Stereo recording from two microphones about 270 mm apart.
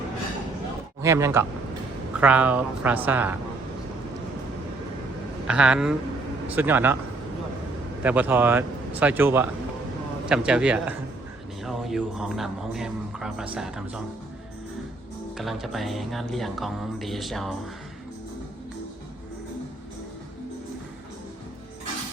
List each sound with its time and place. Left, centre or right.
1.0 s a man's voice: centre
5.5 s a man's voice: centre
8.0 s a man's voice: centre
15.4 s a man's voice: centre